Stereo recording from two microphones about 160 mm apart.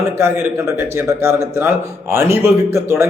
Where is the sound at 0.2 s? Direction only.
15° right (ahead or behind).